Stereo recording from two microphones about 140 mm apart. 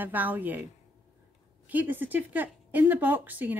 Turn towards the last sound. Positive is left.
turn(degrees=-10)  # may be behind; listen again after turning